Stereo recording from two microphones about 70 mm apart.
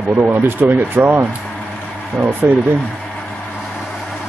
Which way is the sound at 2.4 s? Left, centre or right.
Right.